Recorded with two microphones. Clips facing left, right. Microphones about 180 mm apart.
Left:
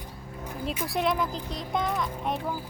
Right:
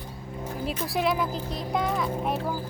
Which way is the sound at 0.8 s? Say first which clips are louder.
Right 1 dB; centre (ahead or behind).